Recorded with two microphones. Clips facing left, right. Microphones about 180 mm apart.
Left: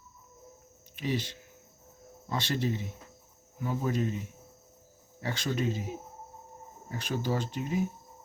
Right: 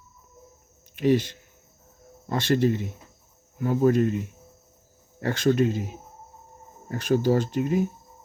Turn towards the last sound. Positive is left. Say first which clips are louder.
# right 9 dB
turn(degrees=-50)  # may be behind; listen again after turning